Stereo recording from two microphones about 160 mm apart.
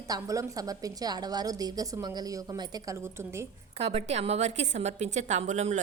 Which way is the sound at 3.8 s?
40° right (ahead or behind).